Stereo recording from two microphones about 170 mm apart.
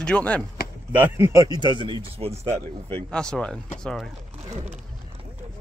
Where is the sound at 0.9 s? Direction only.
10° right (ahead or behind); by 2.3 s 30° right (ahead or behind).